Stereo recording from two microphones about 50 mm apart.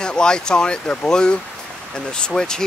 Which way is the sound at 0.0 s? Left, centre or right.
Centre.